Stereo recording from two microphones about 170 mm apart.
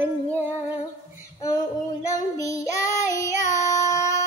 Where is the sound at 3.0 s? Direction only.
20° left (ahead or behind).